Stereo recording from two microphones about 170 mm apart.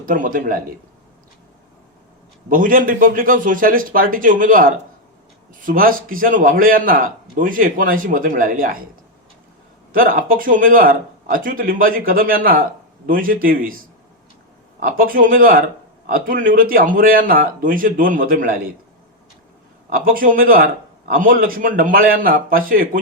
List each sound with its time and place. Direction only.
0.0 s a man's voice: 55° right (ahead or behind)
2.5 s a man's voice: 55° right (ahead or behind)
9.9 s a man's voice: 55° right (ahead or behind)
14.8 s a man's voice: 55° right (ahead or behind)
20.1 s a man's voice: 55° right (ahead or behind)